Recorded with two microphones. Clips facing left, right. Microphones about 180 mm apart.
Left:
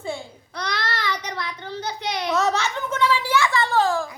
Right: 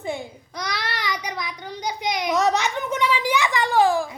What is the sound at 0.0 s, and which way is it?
Child singing, 15° right (ahead or behind).